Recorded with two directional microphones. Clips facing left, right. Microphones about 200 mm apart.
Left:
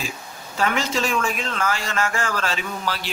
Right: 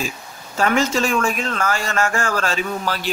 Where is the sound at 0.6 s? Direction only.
45° right (ahead or behind).